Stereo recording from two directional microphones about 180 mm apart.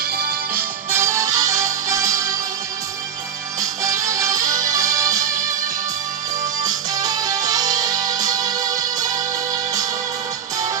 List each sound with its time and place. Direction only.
0.2 s music: 55° right (ahead or behind)
0.9 s music: 15° right (ahead or behind)
3.6 s music: 20° right (ahead or behind)